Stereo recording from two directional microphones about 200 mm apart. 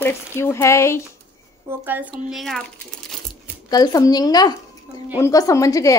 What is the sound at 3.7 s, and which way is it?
Speech, 20° left (ahead or behind).